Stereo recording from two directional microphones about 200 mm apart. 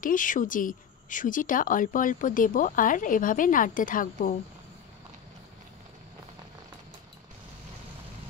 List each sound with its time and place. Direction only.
0.0 s speech: 40° left (ahead or behind)